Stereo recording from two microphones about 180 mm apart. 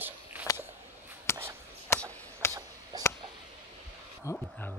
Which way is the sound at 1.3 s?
15° left (ahead or behind).